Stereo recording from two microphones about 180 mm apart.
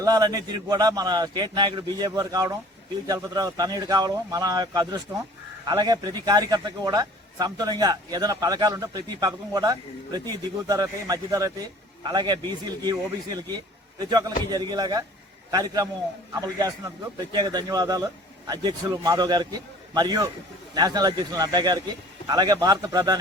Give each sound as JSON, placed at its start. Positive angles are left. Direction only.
{"t": 0.0, "sound": "a man's voice", "side_deg": -20}